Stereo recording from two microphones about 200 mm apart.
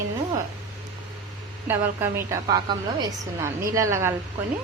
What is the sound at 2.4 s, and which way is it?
A woman's voice, 20° right (ahead or behind).